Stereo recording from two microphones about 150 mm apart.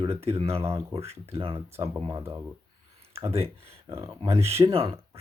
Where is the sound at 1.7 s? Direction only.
15° right (ahead or behind).